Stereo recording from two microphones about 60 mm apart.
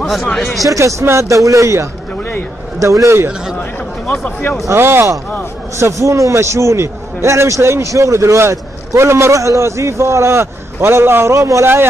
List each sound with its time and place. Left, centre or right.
0.0 s speech: centre
0.7 s speech: right
1.3 s speech: right
4.6 s a man's voice: right
5.8 s a man's voice: right